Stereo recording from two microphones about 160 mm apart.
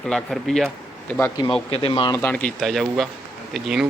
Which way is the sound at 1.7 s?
40° left (ahead or behind).